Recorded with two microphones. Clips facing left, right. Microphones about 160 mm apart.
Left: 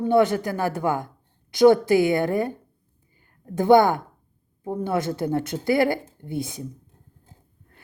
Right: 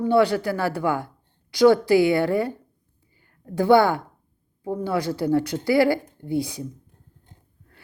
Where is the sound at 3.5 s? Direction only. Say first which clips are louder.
Left 1 dB; 20° left (ahead or behind).